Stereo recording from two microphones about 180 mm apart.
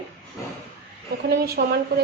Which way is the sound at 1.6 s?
55° right (ahead or behind).